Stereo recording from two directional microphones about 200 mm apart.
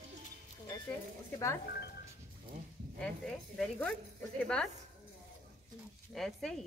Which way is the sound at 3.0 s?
Centre (ahead or behind).